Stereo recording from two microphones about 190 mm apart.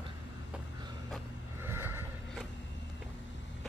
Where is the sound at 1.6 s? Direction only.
10° right (ahead or behind).